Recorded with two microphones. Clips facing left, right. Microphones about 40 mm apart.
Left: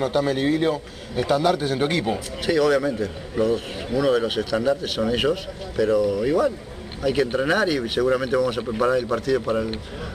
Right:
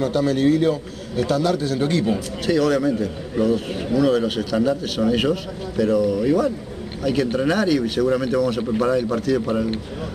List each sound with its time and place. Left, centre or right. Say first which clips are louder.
0.0 s a man's voice: right 3 dB; centre
2.1 s a man's voice: right 1 dB; centre